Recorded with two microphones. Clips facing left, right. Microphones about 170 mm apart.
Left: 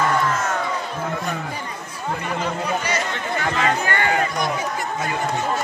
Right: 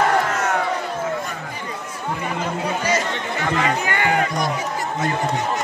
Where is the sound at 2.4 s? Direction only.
45° right (ahead or behind).